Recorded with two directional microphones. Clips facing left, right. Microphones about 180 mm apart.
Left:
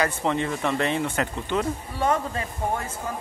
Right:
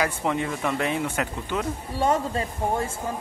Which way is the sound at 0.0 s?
10° right (ahead or behind).